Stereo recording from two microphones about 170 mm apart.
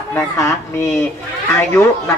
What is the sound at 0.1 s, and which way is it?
Speech, 10° left (ahead or behind).